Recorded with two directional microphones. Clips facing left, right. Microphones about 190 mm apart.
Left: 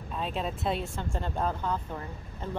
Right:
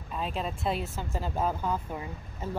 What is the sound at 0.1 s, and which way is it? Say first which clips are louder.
Speech: even; centre (ahead or behind).